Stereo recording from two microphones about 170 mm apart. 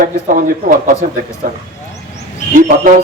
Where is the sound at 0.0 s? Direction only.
55° right (ahead or behind).